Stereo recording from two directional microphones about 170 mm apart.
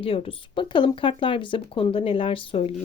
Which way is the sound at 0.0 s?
35° left (ahead or behind).